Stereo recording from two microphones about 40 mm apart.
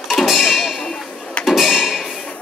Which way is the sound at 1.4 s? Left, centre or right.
Centre.